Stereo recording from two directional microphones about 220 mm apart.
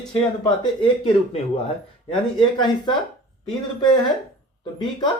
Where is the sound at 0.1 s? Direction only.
20° left (ahead or behind).